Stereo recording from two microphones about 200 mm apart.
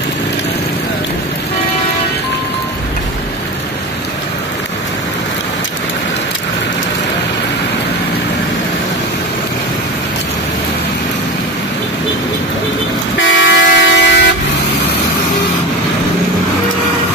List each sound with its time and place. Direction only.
13.3 s vehicle: 65° left (ahead or behind)